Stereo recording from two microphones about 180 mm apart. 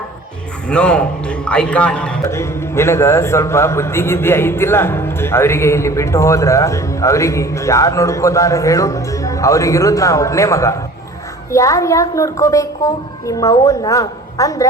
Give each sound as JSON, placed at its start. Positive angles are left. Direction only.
{"t": 0.7, "sound": "a man's voice", "side_deg": 5}